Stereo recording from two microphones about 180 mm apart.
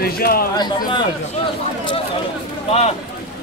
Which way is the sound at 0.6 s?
25° left (ahead or behind).